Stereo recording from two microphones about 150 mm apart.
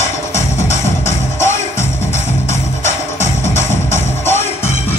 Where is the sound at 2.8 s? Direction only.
15° left (ahead or behind).